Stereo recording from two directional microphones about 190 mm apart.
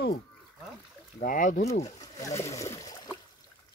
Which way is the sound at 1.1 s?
45° left (ahead or behind).